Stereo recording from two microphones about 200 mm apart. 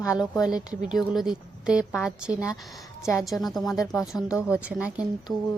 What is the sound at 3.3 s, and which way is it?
Speech, centre (ahead or behind).